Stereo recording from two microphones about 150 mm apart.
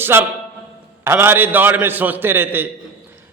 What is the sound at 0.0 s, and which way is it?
A man's voice, 15° right (ahead or behind).